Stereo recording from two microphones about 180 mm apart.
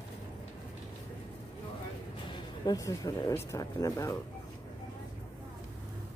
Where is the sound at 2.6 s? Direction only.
20° left (ahead or behind).